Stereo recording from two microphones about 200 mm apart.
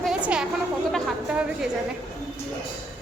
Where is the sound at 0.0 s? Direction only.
5° right (ahead or behind).